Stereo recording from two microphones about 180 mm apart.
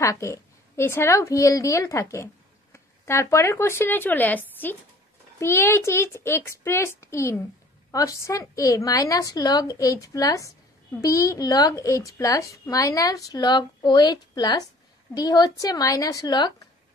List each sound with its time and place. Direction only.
0.0 s a woman's voice: 15° left (ahead or behind)